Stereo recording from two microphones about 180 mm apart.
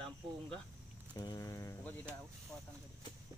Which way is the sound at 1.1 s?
25° left (ahead or behind).